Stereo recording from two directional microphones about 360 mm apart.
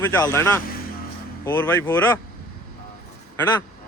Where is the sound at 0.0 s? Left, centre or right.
Centre.